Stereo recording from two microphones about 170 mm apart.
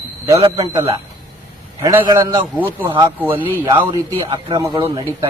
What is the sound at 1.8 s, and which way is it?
A man's voice, 15° right (ahead or behind).